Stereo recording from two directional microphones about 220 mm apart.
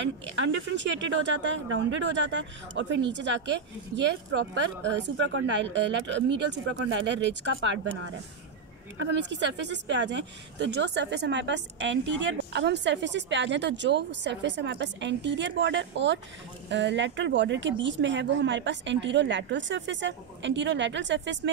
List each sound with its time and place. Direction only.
0.5 s speech: 55° right (ahead or behind)
5.0 s a woman's voice: 60° right (ahead or behind)